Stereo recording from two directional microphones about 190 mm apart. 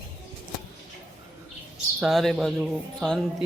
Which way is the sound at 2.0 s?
Centre (ahead or behind).